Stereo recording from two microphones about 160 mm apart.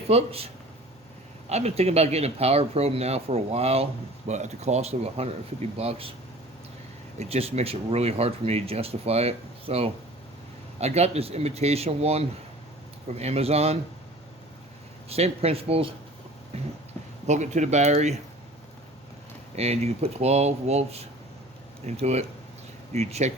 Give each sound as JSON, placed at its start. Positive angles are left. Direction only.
{"t": 0.1, "sound": "speech", "side_deg": -40}
{"t": 7.2, "sound": "speech", "side_deg": -40}
{"t": 15.1, "sound": "speech", "side_deg": -40}
{"t": 17.2, "sound": "speech", "side_deg": -50}
{"t": 19.5, "sound": "speech", "side_deg": -40}